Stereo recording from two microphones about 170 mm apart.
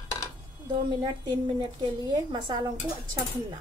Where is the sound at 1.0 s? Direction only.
25° right (ahead or behind).